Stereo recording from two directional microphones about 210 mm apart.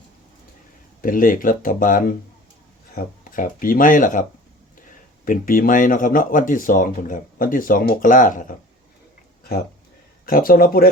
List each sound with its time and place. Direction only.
1.0 s speech: 40° left (ahead or behind)
9.4 s a sound: 45° left (ahead or behind)
10.2 s speech: 45° left (ahead or behind)